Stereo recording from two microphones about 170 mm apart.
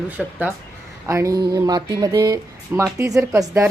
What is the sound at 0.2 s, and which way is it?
Speech, 10° right (ahead or behind).